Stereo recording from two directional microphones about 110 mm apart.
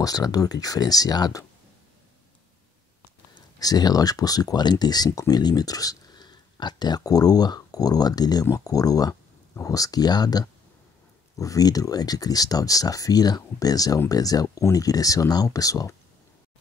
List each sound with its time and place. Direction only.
0.0 s speech: 35° left (ahead or behind)
3.5 s speech: 35° left (ahead or behind)